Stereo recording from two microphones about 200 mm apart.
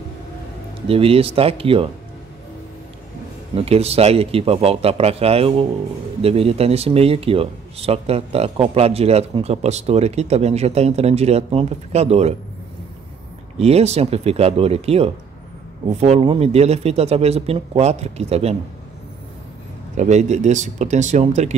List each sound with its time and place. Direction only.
0.8 s a man's voice: 30° right (ahead or behind)
3.5 s a man's voice: 30° right (ahead or behind)
13.6 s speech: 30° right (ahead or behind)
20.0 s speech: 35° right (ahead or behind)